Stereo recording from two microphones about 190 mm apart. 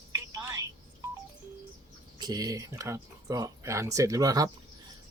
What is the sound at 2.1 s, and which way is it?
Speech, 20° right (ahead or behind).